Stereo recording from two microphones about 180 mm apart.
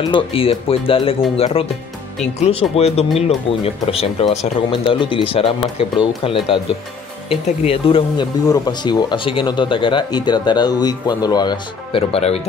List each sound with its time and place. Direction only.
0.1 s speech: 30° left (ahead or behind)
8.5 s speech: 20° left (ahead or behind)